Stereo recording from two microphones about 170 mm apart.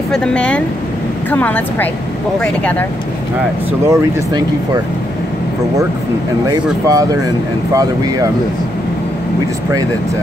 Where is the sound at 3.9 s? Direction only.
25° right (ahead or behind).